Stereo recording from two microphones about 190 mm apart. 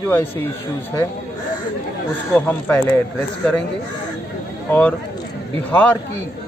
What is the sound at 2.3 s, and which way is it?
Speech, 10° left (ahead or behind).